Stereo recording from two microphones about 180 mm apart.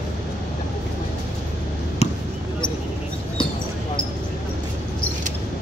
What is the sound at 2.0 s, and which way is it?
Basketball bounce, 35° left (ahead or behind).